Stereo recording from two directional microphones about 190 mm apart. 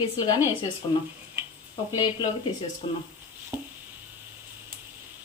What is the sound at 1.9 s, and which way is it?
Speech, 25° left (ahead or behind).